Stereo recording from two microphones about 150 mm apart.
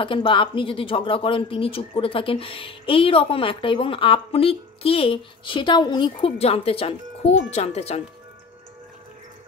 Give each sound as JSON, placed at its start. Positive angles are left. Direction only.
{"t": 0.0, "sound": "speech", "side_deg": 35}